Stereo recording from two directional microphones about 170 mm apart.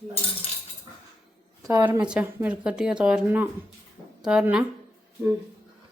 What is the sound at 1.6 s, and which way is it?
A woman's voice, 20° right (ahead or behind).